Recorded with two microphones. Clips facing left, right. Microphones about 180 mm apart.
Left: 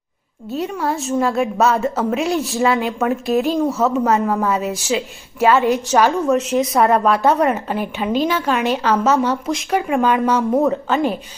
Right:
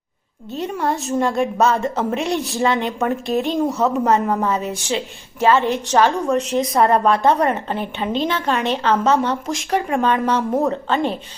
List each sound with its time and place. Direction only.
0.5 s a woman's voice: 5° left (ahead or behind)
6.4 s speech: 30° right (ahead or behind)
6.7 s a woman's voice: 5° left (ahead or behind)